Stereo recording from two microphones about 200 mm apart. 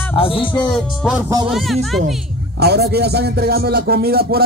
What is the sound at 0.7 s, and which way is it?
A man's voice, centre (ahead or behind).